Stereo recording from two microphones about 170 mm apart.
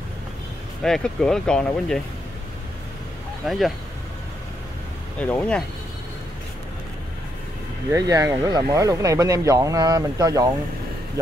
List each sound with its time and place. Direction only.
0.8 s speech: 5° left (ahead or behind)
3.4 s speech: centre (ahead or behind)
5.2 s speech: 10° left (ahead or behind)
7.9 s speech: 20° right (ahead or behind)